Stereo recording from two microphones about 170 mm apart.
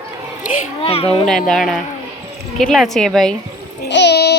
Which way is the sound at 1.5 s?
Centre (ahead or behind).